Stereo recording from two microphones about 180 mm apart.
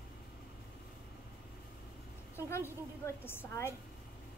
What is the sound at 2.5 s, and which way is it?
A woman's voice, 15° left (ahead or behind).